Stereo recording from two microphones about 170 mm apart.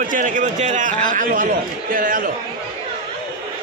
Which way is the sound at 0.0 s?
50° right (ahead or behind).